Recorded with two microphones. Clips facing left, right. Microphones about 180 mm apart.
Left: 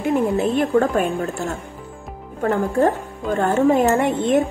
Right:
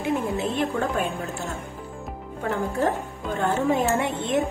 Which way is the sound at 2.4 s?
50° left (ahead or behind).